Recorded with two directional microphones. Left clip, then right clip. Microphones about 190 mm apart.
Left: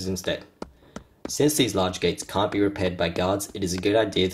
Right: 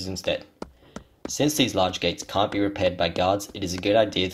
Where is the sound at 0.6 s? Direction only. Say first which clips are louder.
Even; centre (ahead or behind).